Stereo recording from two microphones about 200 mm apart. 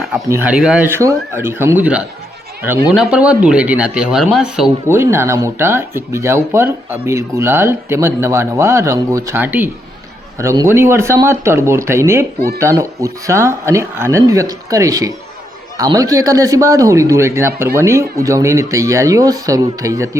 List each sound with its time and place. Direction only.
0.3 s speech: 5° right (ahead or behind)